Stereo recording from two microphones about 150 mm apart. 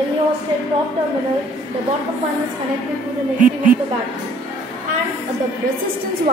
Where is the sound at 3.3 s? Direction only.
60° right (ahead or behind).